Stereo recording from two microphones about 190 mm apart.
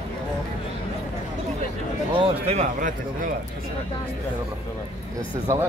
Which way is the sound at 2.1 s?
30° right (ahead or behind).